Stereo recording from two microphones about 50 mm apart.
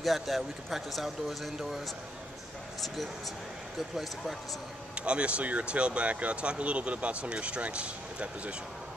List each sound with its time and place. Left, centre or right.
0.0 s speech: centre
3.9 s speech: centre
4.9 s speech: right